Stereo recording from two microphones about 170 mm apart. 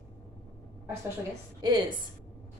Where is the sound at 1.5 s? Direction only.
25° right (ahead or behind).